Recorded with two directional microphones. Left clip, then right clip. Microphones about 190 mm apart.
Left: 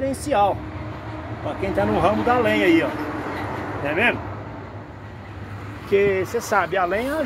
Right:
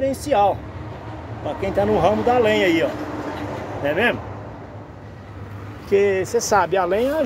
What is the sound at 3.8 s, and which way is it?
Speech, 35° right (ahead or behind).